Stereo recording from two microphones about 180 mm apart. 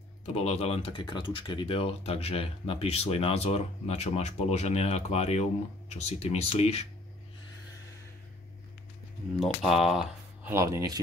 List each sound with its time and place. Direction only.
0.3 s speech: 35° left (ahead or behind)
9.4 s speech: centre (ahead or behind)
10.5 s speech: 15° right (ahead or behind)